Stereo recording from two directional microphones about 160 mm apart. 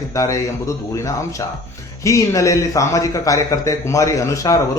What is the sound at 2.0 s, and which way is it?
A man's voice, 20° left (ahead or behind).